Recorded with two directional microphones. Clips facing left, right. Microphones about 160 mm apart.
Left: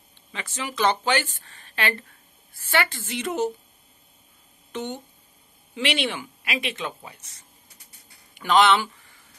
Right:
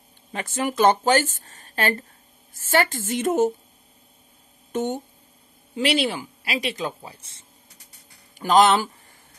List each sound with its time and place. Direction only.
0.3 s speech: 50° right (ahead or behind)
4.7 s speech: 45° right (ahead or behind); by 7.4 s 30° right (ahead or behind)
8.4 s speech: 40° right (ahead or behind)